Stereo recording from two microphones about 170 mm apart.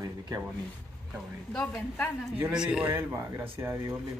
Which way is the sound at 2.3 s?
10° right (ahead or behind).